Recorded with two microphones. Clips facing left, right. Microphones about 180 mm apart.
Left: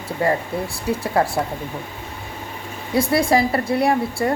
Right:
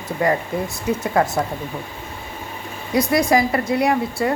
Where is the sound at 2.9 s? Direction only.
30° left (ahead or behind).